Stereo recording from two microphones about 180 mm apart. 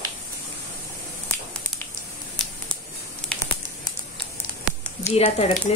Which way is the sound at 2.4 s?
Centre (ahead or behind).